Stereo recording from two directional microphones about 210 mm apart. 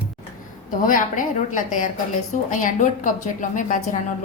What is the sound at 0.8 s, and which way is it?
A woman's voice, 40° left (ahead or behind).